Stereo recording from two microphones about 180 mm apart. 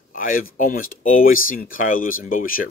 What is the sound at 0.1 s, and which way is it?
Speech, 50° left (ahead or behind).